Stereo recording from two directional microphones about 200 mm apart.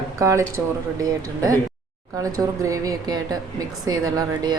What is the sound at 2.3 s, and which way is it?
Speech, 15° right (ahead or behind).